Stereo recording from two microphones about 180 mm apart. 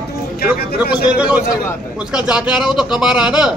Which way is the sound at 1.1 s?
5° right (ahead or behind).